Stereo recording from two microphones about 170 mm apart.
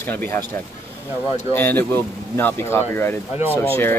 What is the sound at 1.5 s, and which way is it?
Speech, 10° left (ahead or behind).